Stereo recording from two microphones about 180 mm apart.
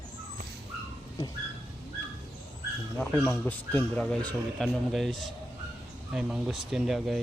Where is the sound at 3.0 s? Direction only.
5° left (ahead or behind).